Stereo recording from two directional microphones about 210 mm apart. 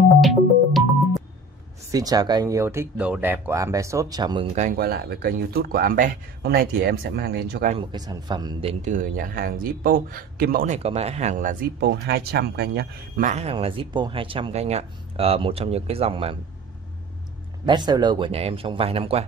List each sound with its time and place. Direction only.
0.2 s music: centre (ahead or behind)
1.9 s speech: 15° right (ahead or behind)
4.6 s speech: 40° right (ahead or behind)
7.7 s speech: 20° right (ahead or behind); by 10.8 s 45° right (ahead or behind)
10.8 s speech: 30° right (ahead or behind); by 13.3 s 50° right (ahead or behind)
13.3 s speech: 30° right (ahead or behind)
17.6 s speech: 20° right (ahead or behind)